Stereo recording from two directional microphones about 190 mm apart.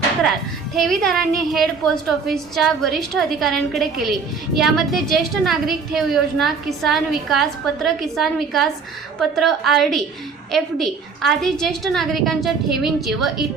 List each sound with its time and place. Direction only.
0.8 s a woman's voice: centre (ahead or behind)